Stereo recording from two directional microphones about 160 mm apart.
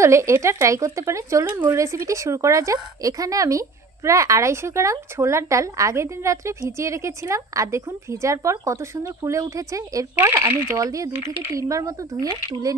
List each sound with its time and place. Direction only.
0.0 s speech: 15° right (ahead or behind)